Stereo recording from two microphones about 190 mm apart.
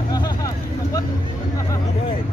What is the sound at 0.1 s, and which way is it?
Vehicle, 20° left (ahead or behind).